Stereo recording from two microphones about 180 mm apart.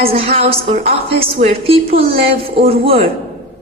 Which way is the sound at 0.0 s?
30° right (ahead or behind).